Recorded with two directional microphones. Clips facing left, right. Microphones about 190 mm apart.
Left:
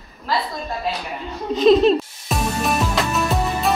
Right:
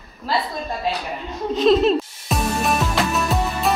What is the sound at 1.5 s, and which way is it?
Music, centre (ahead or behind).